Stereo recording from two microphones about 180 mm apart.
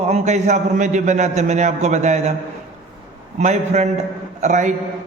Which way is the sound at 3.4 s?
40° right (ahead or behind).